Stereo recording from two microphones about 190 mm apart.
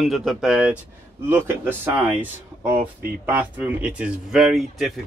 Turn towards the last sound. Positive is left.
turn(degrees=0)  # may be behind; listen again after turning